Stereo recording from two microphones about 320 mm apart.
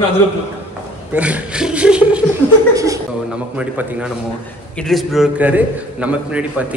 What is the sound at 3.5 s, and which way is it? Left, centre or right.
A man's voice, centre.